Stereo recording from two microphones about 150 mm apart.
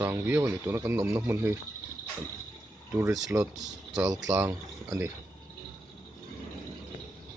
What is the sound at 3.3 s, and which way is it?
Speech, 20° right (ahead or behind).